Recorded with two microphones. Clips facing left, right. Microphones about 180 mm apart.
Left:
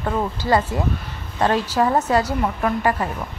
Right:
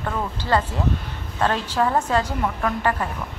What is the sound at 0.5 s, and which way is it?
Speech, 10° left (ahead or behind).